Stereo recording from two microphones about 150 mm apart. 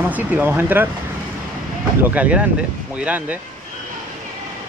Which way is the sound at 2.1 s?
10° right (ahead or behind).